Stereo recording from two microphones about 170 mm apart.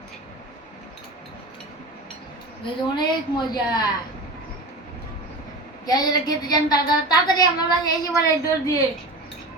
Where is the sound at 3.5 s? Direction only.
25° left (ahead or behind).